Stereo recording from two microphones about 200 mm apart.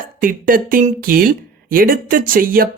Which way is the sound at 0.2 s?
45° right (ahead or behind).